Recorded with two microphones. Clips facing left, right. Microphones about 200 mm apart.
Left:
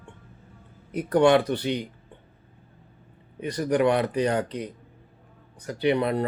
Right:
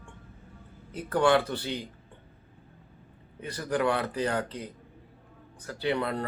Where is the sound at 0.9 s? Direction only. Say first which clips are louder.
Left 5 dB; 15° left (ahead or behind).